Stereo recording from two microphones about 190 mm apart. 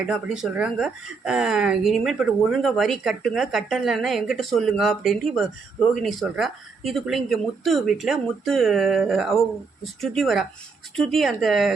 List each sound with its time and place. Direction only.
0.0 s speech: 5° right (ahead or behind)